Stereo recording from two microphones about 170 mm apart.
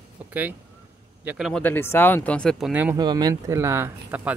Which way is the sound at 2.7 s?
10° right (ahead or behind).